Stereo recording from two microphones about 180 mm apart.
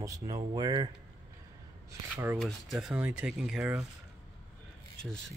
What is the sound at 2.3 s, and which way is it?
Speech, centre (ahead or behind).